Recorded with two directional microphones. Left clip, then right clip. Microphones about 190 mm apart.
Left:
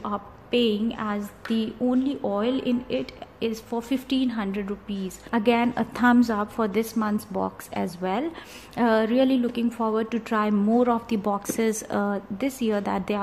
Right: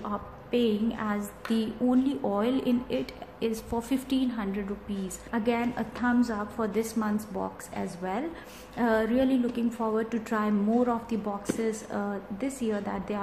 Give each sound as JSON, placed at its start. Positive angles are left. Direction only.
{"t": 0.0, "sound": "a woman's voice", "side_deg": 25}